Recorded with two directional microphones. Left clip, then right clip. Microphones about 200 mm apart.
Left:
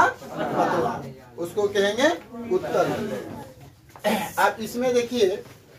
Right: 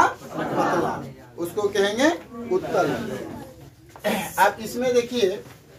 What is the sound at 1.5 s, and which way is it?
Speech, 15° right (ahead or behind).